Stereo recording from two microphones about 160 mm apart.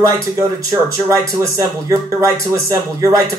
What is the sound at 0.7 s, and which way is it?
Speech, 20° right (ahead or behind).